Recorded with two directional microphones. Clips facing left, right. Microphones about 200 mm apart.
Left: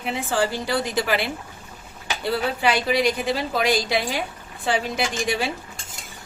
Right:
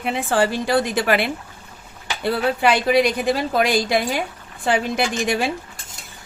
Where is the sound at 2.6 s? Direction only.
55° right (ahead or behind).